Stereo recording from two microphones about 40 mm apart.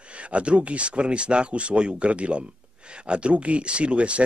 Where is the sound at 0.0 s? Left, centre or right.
Right.